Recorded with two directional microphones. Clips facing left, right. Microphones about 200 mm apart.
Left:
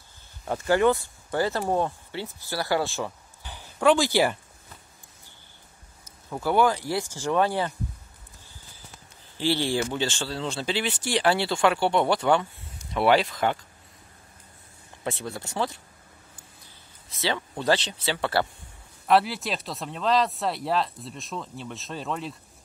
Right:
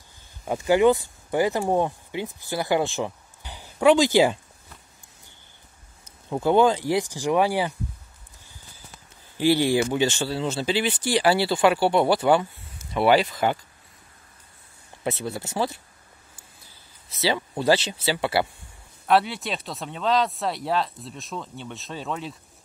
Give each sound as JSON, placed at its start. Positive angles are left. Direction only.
{"t": 0.5, "sound": "speech", "side_deg": -15}
{"t": 6.3, "sound": "speech", "side_deg": -20}
{"t": 9.4, "sound": "speech", "side_deg": -15}
{"t": 15.0, "sound": "speech", "side_deg": -5}
{"t": 17.2, "sound": "speech", "side_deg": -10}
{"t": 19.0, "sound": "speech", "side_deg": 0}